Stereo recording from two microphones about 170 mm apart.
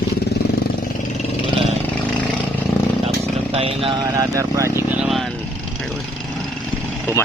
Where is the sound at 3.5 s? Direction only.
35° right (ahead or behind).